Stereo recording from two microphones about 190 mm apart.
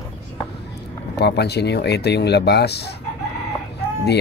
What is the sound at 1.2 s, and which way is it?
Speech, 60° left (ahead or behind).